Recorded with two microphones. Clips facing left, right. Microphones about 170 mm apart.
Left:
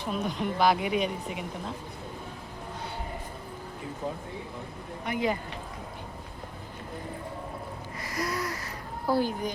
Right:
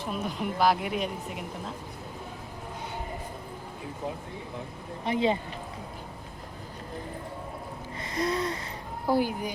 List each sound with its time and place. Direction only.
0.0 s speech: 5° right (ahead or behind)
5.0 s speech: 25° right (ahead or behind)
8.0 s gasp: 25° right (ahead or behind)
9.0 s speech: 15° right (ahead or behind)